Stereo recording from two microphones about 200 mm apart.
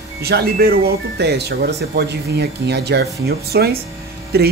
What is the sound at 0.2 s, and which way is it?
Speech, 50° right (ahead or behind).